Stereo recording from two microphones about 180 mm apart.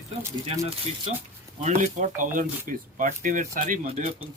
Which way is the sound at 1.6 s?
45° right (ahead or behind).